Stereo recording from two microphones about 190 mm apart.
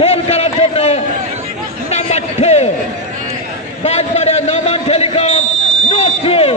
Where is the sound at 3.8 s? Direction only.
35° left (ahead or behind).